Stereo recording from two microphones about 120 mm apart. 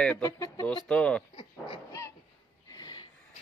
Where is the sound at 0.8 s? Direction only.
10° left (ahead or behind).